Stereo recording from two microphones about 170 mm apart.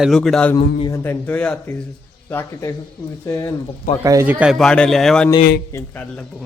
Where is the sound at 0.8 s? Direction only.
20° left (ahead or behind).